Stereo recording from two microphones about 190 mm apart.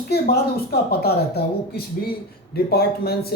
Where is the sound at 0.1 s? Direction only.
55° left (ahead or behind).